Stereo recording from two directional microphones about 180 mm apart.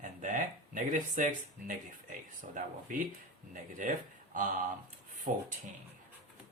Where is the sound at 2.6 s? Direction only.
50° right (ahead or behind).